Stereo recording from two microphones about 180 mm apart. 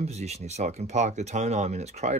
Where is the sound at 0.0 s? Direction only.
35° right (ahead or behind).